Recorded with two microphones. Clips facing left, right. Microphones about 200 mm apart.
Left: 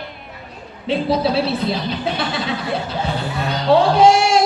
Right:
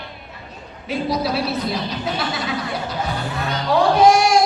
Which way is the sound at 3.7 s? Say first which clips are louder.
Left 2 dB; 25° left (ahead or behind).